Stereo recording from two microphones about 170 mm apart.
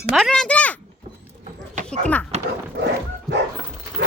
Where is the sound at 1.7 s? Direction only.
45° right (ahead or behind).